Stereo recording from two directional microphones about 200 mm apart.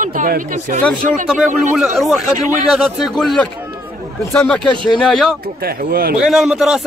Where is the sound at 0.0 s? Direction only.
40° right (ahead or behind).